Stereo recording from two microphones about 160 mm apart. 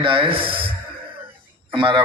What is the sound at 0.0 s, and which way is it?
Speech, 30° right (ahead or behind).